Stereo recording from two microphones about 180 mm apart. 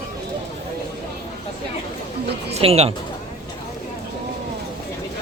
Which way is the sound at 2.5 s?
35° right (ahead or behind).